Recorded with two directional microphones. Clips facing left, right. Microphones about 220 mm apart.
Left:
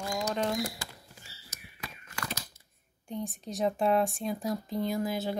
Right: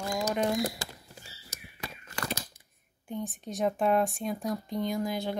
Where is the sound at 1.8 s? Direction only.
30° right (ahead or behind).